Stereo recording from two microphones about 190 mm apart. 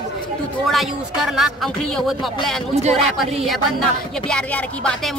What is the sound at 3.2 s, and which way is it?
A woman's voice, centre (ahead or behind).